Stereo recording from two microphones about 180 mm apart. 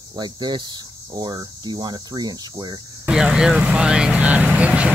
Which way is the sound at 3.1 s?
5° right (ahead or behind).